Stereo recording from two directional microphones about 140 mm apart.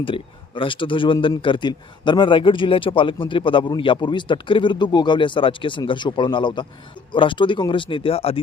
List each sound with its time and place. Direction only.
0.0 s speech: 40° left (ahead or behind)